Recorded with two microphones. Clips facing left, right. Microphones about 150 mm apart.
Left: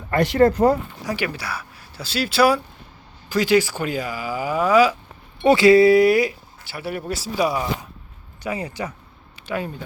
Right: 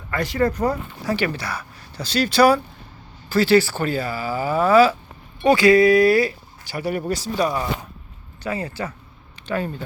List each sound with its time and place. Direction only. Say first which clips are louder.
0.1 s speech: left 5 dB; 25° left (ahead or behind)
1.0 s speech: right 6 dB; 10° left (ahead or behind)
5.4 s speech: left 1 dB; 25° left (ahead or behind)
6.7 s speech: right 4 dB; 5° left (ahead or behind)